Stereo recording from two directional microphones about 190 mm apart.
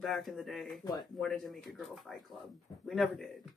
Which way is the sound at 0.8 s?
20° left (ahead or behind).